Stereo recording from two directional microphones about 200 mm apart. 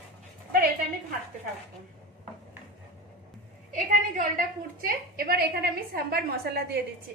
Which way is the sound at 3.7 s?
40° right (ahead or behind).